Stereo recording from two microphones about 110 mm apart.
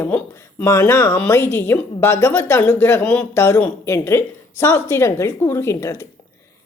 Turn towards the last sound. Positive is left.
turn(degrees=25)  # may be behind; listen again after turning